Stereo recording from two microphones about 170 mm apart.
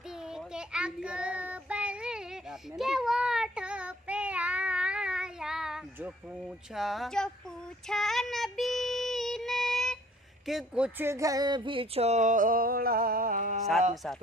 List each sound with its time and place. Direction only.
0.3 s child singing: 5° right (ahead or behind)
10.4 s speech: 5° right (ahead or behind); by 13.6 s 50° right (ahead or behind)